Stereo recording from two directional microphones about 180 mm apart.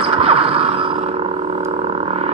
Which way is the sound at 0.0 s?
35° right (ahead or behind).